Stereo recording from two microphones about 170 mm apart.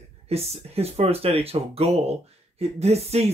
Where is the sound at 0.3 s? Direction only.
35° right (ahead or behind).